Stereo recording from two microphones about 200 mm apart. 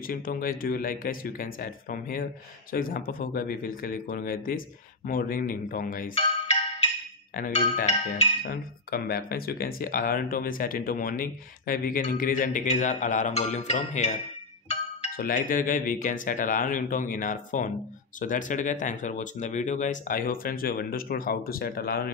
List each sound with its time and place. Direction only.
0.0 s speech: 45° left (ahead or behind)
6.1 s music: 30° left (ahead or behind)
7.3 s speech: 40° left (ahead or behind)
8.4 s speech: 50° left (ahead or behind)